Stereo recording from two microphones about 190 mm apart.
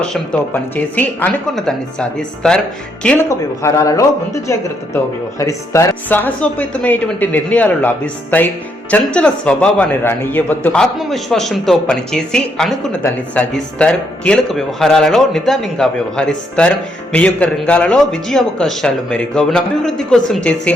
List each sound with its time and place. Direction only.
0.0 s a man's voice: 5° left (ahead or behind)
3.2 s speech: 15° left (ahead or behind)
5.4 s a man's voice: 15° left (ahead or behind)